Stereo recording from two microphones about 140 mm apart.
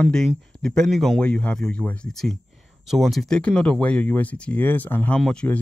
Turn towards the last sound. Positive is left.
turn(degrees=5)  # may be behind; listen again after turning